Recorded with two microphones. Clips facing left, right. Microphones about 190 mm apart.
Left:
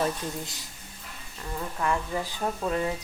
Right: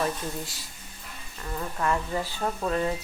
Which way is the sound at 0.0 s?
20° left (ahead or behind).